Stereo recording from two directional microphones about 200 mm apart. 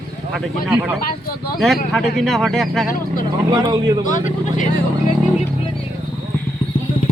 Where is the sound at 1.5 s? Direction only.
Centre (ahead or behind).